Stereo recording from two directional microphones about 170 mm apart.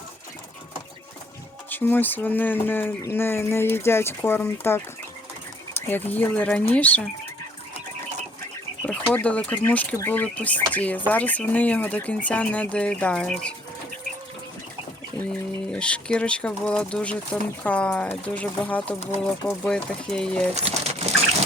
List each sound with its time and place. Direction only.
1.7 s speech: 10° left (ahead or behind)
8.8 s speech: 10° left (ahead or behind)
15.3 s speech: 5° left (ahead or behind)
20.5 s speech: 40° right (ahead or behind)